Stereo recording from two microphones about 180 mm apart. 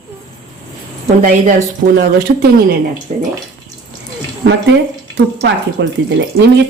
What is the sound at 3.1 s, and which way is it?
Speech, 35° right (ahead or behind).